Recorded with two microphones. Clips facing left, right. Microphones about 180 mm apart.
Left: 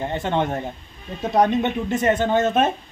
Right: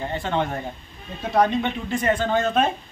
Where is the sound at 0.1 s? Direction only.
20° left (ahead or behind).